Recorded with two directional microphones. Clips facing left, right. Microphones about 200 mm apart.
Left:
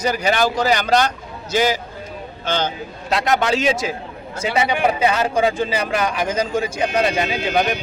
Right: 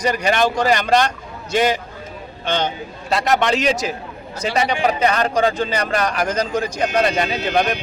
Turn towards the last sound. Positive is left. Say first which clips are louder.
# even
turn(degrees=0)  # may be behind; listen again after turning